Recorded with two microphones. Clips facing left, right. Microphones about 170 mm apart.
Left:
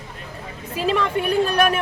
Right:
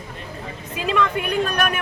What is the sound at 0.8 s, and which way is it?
Speech, 35° left (ahead or behind).